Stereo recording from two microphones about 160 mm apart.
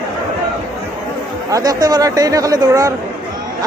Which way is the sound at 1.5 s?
20° right (ahead or behind).